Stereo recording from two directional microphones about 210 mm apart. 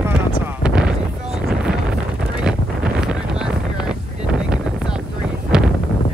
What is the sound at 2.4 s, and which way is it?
Wind noise, 5° right (ahead or behind).